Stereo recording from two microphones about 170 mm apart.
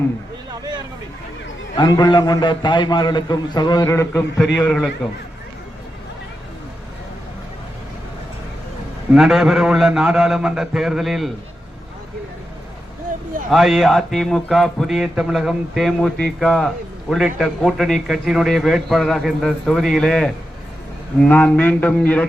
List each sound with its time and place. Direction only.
1.7 s a man's voice: 25° left (ahead or behind)
4.6 s a man's voice: 5° left (ahead or behind)
9.1 s a man's voice: centre (ahead or behind)
13.5 s a man's voice: centre (ahead or behind)